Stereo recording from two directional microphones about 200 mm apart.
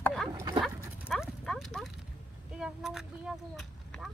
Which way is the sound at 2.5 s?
Centre (ahead or behind).